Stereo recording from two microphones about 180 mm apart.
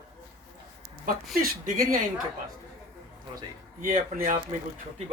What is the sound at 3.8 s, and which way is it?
Speech, 50° right (ahead or behind).